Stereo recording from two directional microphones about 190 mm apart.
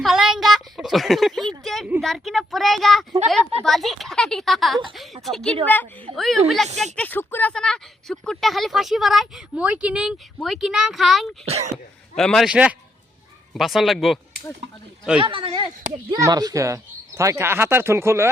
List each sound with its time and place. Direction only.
0.0 s a sound: centre (ahead or behind)
3.2 s speech: centre (ahead or behind)
11.4 s speech: 35° right (ahead or behind)
12.1 s speech: 5° left (ahead or behind)
15.2 s speech: 30° right (ahead or behind)